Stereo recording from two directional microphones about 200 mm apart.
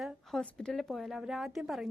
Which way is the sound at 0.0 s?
Centre (ahead or behind).